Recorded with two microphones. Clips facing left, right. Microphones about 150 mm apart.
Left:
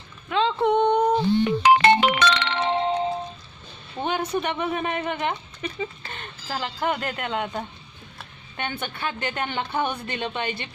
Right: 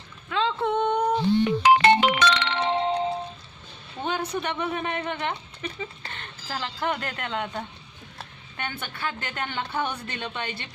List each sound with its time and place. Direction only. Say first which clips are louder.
0.3 s a sound: left 4 dB; 25° left (ahead or behind)
1.5 s ringtone: left 1 dB; 60° left (ahead or behind)
4.0 s speech: left 3 dB; 15° left (ahead or behind)